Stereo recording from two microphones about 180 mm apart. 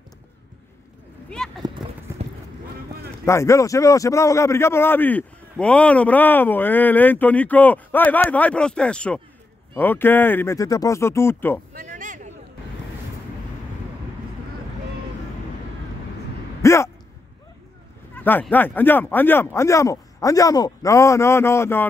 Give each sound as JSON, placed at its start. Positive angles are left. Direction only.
{"t": 1.8, "sound": "clip-clop", "side_deg": -5}
{"t": 2.2, "sound": "clip-clop", "side_deg": -35}
{"t": 3.3, "sound": "a man's voice", "side_deg": 15}
{"t": 11.7, "sound": "a sound", "side_deg": -50}
{"t": 16.6, "sound": "a sound", "side_deg": 15}
{"t": 18.1, "sound": "a man's voice", "side_deg": 10}